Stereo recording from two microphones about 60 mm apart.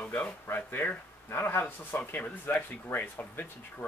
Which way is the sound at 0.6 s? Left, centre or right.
Left.